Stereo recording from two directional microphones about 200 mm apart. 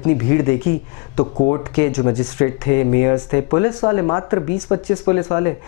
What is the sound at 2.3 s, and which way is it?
A man's voice, 20° left (ahead or behind).